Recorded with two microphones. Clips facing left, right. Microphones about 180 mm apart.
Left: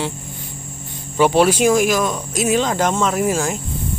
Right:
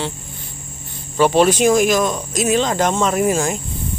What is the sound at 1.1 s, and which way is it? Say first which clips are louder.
Speech: even; 10° left (ahead or behind).